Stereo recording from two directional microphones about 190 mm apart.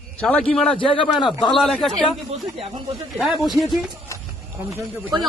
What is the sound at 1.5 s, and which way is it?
Speech, centre (ahead or behind).